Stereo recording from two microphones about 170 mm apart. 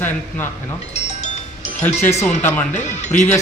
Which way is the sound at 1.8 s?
15° left (ahead or behind).